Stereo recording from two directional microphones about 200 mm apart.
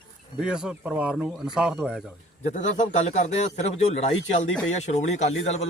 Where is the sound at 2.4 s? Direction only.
35° left (ahead or behind).